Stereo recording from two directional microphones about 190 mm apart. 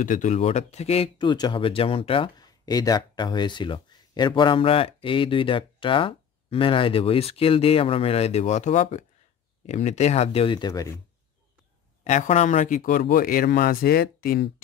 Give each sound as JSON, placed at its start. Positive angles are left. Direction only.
{"t": 0.0, "sound": "speech", "side_deg": 45}
{"t": 12.0, "sound": "speech", "side_deg": 40}